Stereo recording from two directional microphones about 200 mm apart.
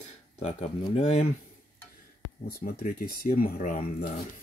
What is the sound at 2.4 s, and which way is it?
Speech, 45° left (ahead or behind).